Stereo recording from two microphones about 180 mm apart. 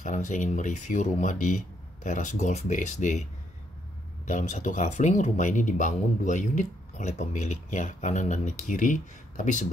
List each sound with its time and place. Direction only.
0.0 s speech: 45° left (ahead or behind)
4.3 s speech: 45° left (ahead or behind)